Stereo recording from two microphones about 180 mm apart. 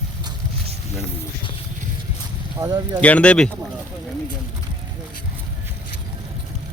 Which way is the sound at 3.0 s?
5° left (ahead or behind).